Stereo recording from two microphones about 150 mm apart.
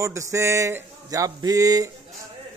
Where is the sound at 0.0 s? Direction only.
20° right (ahead or behind).